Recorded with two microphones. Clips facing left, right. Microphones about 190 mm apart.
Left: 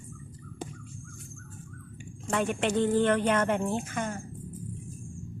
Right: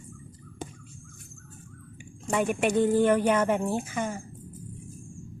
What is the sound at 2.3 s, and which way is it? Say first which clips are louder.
Speech: right 3 dB; 10° right (ahead or behind).